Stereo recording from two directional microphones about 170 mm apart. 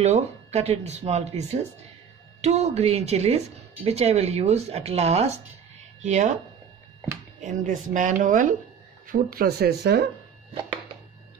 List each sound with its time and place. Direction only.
0.0 s a woman's voice: 40° right (ahead or behind)
7.3 s a woman's voice: 50° right (ahead or behind); by 10.0 s 70° right (ahead or behind)